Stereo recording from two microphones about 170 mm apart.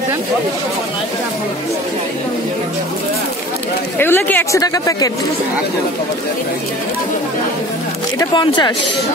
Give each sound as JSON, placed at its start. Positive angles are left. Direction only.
{"t": 4.0, "sound": "a woman's voice", "side_deg": 10}
{"t": 8.2, "sound": "a woman's voice", "side_deg": 25}